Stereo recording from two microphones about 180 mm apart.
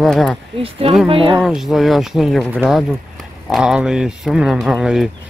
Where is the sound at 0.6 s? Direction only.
30° right (ahead or behind).